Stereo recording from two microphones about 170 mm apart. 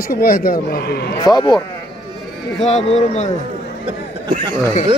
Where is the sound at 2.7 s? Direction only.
40° left (ahead or behind).